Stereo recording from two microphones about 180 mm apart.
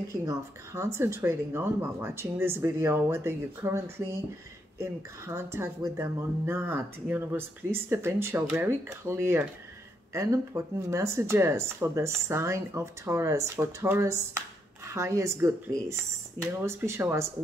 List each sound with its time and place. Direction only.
0.1 s speech: 15° right (ahead or behind)